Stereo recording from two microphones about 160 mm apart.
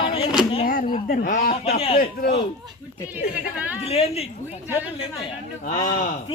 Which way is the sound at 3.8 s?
40° left (ahead or behind).